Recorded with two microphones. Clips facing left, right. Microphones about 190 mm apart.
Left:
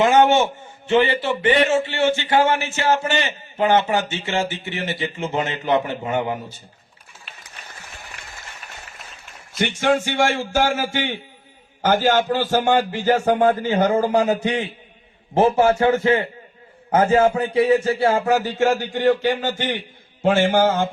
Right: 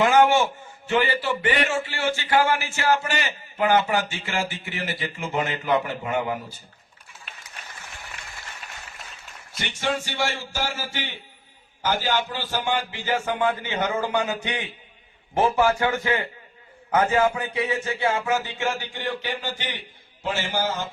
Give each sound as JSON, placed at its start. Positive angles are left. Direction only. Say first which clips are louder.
{"t": 0.0, "sound": "a man's voice", "louder": "left 3 dB", "side_deg": 25}
{"t": 9.8, "sound": "a man's voice", "louder": "left 7 dB", "side_deg": 50}